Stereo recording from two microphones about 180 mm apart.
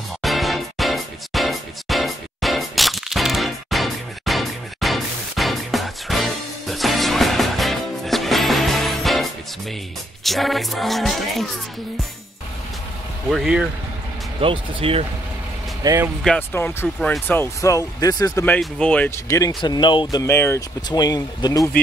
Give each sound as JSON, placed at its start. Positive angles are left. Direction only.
{"t": 0.2, "sound": "music", "side_deg": 0}
{"t": 13.3, "sound": "music", "side_deg": 0}
{"t": 14.4, "sound": "speech", "side_deg": -30}
{"t": 15.8, "sound": "speech", "side_deg": -20}
{"t": 16.3, "sound": "speech", "side_deg": 10}